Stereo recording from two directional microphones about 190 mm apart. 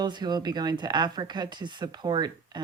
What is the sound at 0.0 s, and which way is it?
Speech, 20° right (ahead or behind).